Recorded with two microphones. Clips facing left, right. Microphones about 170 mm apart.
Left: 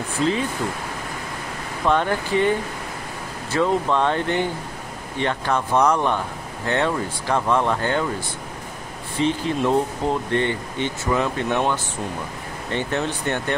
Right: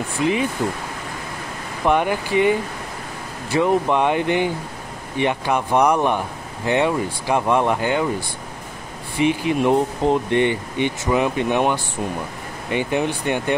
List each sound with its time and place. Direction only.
0.6 s speech: 15° right (ahead or behind)
1.9 s speech: 15° right (ahead or behind)
9.1 s speech: 15° right (ahead or behind)